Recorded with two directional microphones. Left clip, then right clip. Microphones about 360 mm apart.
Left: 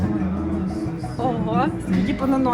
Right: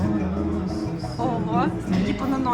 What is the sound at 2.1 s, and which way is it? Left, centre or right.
Speech, centre.